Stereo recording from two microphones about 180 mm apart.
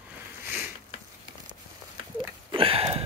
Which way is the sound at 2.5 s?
30° right (ahead or behind).